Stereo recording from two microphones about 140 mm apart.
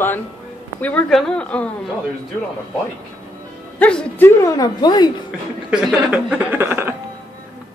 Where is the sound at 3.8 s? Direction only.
10° left (ahead or behind); by 5.1 s 30° left (ahead or behind).